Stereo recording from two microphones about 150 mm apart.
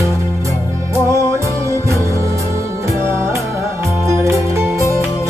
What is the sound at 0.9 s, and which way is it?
Music, 20° right (ahead or behind).